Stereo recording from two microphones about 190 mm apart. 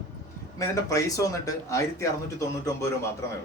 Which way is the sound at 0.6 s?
15° left (ahead or behind).